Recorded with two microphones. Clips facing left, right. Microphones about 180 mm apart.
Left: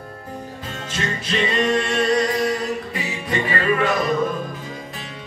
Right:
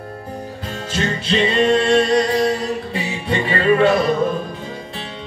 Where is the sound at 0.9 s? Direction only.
30° right (ahead or behind).